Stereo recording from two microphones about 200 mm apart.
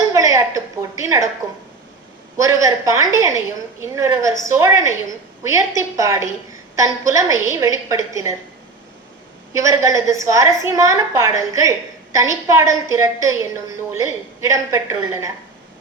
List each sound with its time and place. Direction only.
0.1 s a sound: 15° right (ahead or behind)
2.4 s a woman's voice: 15° right (ahead or behind)
9.5 s a woman's voice: 15° right (ahead or behind)